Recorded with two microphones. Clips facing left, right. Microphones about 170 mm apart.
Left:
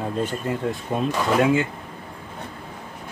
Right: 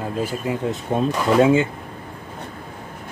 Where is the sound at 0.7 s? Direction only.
25° right (ahead or behind).